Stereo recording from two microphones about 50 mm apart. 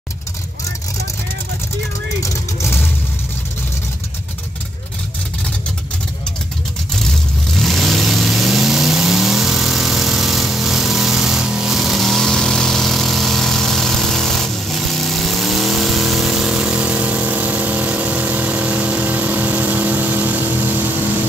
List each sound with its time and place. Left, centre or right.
7.0 s vehicle: centre
16.5 s vehicle: right